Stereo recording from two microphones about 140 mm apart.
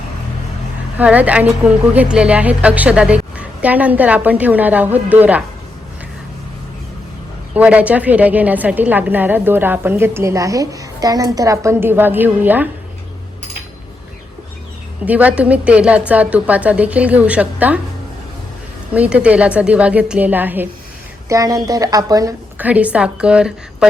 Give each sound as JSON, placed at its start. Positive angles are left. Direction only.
{"t": 0.9, "sound": "a woman's voice", "side_deg": -10}
{"t": 7.5, "sound": "a woman's voice", "side_deg": -10}
{"t": 15.0, "sound": "a woman's voice", "side_deg": -10}
{"t": 18.9, "sound": "a woman's voice", "side_deg": -10}
{"t": 21.2, "sound": "a woman's voice", "side_deg": -25}
{"t": 22.5, "sound": "a woman's voice", "side_deg": -10}